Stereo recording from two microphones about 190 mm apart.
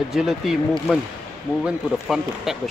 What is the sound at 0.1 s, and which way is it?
Speech, centre (ahead or behind).